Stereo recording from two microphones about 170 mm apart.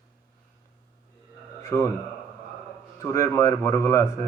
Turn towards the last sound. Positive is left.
turn(degrees=15)  # may be behind; listen again after turning